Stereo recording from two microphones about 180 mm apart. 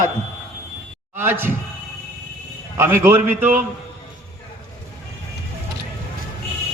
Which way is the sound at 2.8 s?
15° right (ahead or behind).